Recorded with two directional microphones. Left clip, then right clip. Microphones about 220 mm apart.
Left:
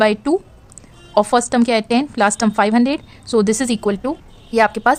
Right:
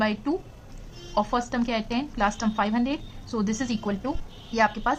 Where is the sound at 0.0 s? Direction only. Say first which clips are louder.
Left 11 dB; 45° left (ahead or behind).